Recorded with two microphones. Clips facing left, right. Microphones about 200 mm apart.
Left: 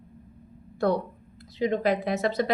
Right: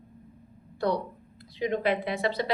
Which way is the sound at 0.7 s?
50° left (ahead or behind).